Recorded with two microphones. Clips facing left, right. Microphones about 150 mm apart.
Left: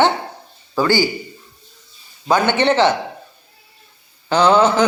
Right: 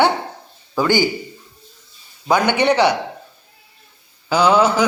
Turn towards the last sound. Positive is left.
turn(degrees=-10)  # may be behind; listen again after turning